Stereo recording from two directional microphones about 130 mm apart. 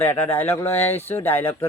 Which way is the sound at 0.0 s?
15° left (ahead or behind).